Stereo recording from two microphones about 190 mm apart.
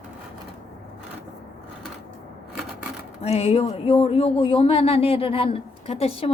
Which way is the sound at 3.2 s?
30° left (ahead or behind).